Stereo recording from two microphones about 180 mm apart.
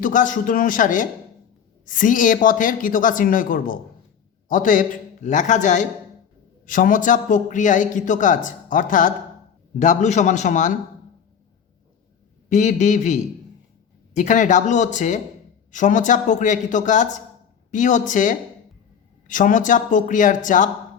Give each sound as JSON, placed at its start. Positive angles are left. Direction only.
{"t": 0.0, "sound": "a man's voice", "side_deg": 45}
{"t": 12.5, "sound": "a man's voice", "side_deg": 40}